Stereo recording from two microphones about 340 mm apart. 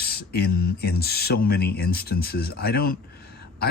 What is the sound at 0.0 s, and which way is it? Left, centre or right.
Speech, left.